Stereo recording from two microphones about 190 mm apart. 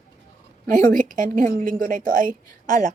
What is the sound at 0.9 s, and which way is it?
A woman's voice, 45° right (ahead or behind).